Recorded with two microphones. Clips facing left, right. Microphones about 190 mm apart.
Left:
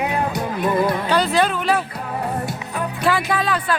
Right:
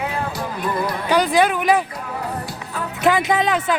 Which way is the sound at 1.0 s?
15° right (ahead or behind).